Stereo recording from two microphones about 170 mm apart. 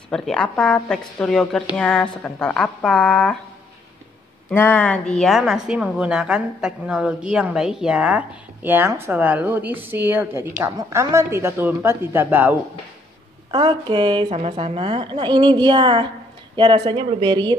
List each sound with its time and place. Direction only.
0.1 s a woman's voice: 5° left (ahead or behind)
4.5 s a woman's voice: 10° left (ahead or behind); by 12.5 s 10° right (ahead or behind)
13.5 s a woman's voice: 30° right (ahead or behind)